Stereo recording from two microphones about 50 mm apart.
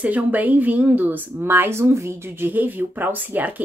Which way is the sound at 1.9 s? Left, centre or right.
Right.